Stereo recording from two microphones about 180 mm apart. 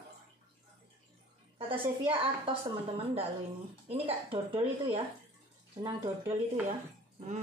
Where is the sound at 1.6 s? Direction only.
30° right (ahead or behind).